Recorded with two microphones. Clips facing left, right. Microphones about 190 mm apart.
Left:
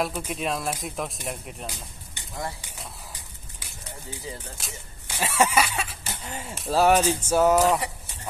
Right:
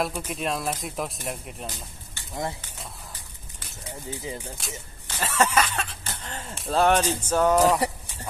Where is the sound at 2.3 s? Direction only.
20° right (ahead or behind).